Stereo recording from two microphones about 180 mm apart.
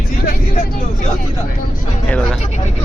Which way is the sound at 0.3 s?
50° left (ahead or behind).